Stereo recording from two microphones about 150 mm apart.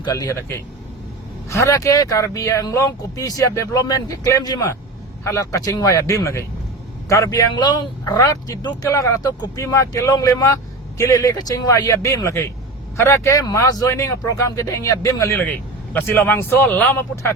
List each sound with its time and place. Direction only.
0.0 s speech: 25° left (ahead or behind)